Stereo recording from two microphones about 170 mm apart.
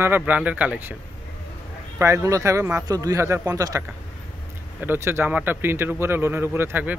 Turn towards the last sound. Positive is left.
turn(degrees=-10)  # may be behind; listen again after turning